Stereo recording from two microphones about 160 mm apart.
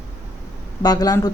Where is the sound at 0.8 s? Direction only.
25° left (ahead or behind).